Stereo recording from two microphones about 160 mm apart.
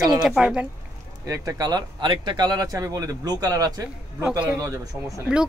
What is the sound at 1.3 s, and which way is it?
Speech, 20° right (ahead or behind).